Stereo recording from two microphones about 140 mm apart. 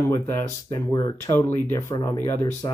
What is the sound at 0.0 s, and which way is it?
Speech, 20° left (ahead or behind).